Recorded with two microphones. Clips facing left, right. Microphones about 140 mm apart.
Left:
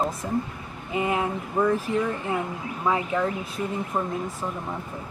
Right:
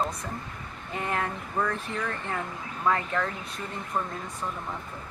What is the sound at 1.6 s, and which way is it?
Speech, 20° left (ahead or behind).